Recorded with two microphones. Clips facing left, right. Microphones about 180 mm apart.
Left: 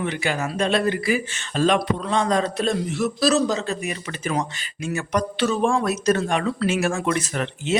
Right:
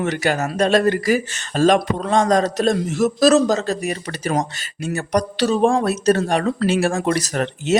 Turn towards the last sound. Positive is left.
turn(degrees=-40)  # may be behind; listen again after turning